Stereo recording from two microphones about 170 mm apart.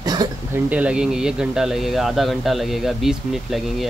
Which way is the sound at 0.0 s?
25° right (ahead or behind).